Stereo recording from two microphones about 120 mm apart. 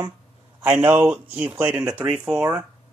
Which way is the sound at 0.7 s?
10° right (ahead or behind).